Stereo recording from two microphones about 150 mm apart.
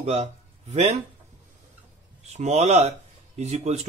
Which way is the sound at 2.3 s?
50° right (ahead or behind).